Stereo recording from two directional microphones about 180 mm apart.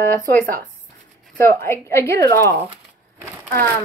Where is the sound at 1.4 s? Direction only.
15° left (ahead or behind).